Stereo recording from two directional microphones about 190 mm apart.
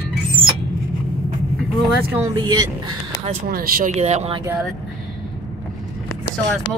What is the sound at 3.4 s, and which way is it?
Speech, 50° right (ahead or behind).